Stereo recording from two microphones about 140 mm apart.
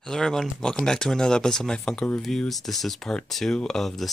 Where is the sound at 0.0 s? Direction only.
5° left (ahead or behind).